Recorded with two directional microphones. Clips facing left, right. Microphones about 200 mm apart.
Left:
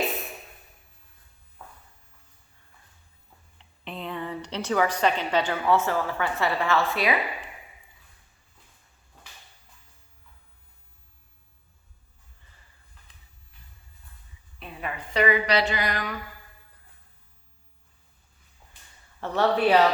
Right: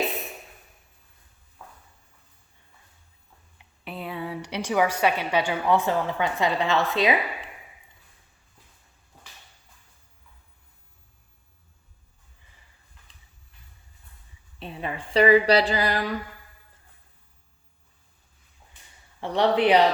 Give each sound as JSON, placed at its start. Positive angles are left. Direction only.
{"t": 3.6, "sound": "a woman's voice", "side_deg": -5}
{"t": 14.6, "sound": "a sound", "side_deg": -25}
{"t": 19.2, "sound": "speech", "side_deg": -15}